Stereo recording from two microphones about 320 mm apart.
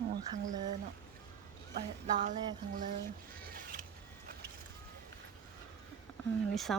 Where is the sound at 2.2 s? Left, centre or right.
Right.